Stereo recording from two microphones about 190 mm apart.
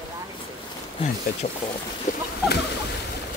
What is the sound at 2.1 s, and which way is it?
Speech, 45° left (ahead or behind).